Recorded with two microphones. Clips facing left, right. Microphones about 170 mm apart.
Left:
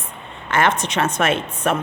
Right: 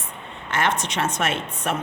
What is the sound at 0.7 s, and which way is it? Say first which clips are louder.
Speech: left 4 dB; 55° left (ahead or behind).